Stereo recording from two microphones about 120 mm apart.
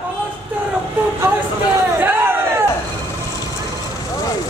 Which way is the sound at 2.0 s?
15° right (ahead or behind).